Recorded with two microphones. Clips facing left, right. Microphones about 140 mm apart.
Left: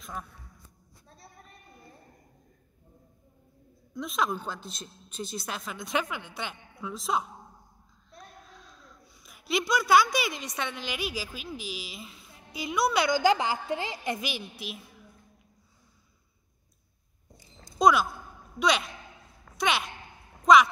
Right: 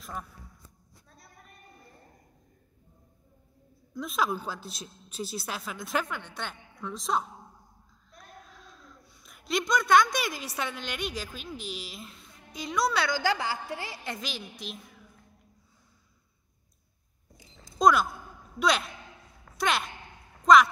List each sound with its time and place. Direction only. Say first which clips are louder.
0.0 s speech: even; centre (ahead or behind)
1.0 s a sound: left 5 dB; 30° left (ahead or behind)
3.9 s speech: even; centre (ahead or behind)
8.5 s speech: right 1 dB; centre (ahead or behind)
17.7 s speech: even; centre (ahead or behind)
19.4 s a sound: even; centre (ahead or behind)